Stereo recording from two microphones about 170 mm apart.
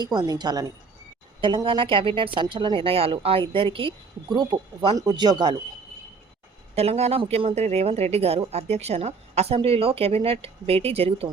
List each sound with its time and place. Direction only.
0.0 s speech: 25° right (ahead or behind)
6.7 s a woman's voice: 40° right (ahead or behind)